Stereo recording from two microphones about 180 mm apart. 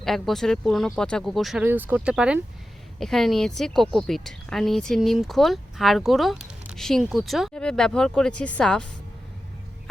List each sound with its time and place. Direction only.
0.0 s speech: centre (ahead or behind)
1.6 s speech: 10° right (ahead or behind); by 8.9 s 5° left (ahead or behind)